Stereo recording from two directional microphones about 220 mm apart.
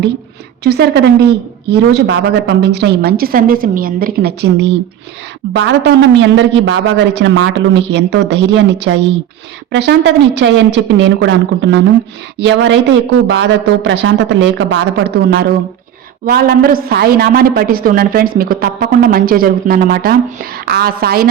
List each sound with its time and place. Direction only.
0.6 s a woman's voice: 50° right (ahead or behind)